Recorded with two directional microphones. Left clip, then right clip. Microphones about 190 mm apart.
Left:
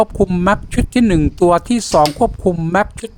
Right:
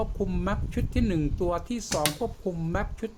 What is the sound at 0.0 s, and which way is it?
Speech, 50° left (ahead or behind).